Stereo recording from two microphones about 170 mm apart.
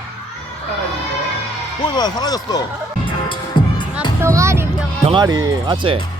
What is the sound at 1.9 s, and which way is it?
Speech, 25° left (ahead or behind).